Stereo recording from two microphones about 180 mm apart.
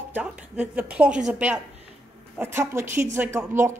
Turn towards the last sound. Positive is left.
turn(degrees=-15)  # may be behind; listen again after turning